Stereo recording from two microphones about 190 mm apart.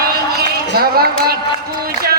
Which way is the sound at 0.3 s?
55° right (ahead or behind).